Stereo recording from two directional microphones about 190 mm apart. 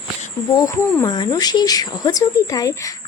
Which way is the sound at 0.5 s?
20° left (ahead or behind).